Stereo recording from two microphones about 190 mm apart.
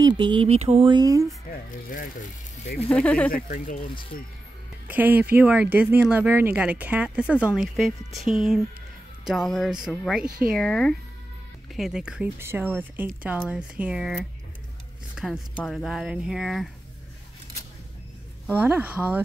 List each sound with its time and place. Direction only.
0.0 s speech: 25° right (ahead or behind)
1.5 s speech: 45° left (ahead or behind)
2.9 s speech: 5° left (ahead or behind)
3.4 s speech: 45° left (ahead or behind)
4.8 s speech: 10° right (ahead or behind)
15.2 s a sound: 5° right (ahead or behind)
15.5 s speech: centre (ahead or behind)
18.5 s speech: 10° right (ahead or behind)